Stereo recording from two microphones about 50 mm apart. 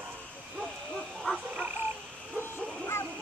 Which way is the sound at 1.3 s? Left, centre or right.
Left.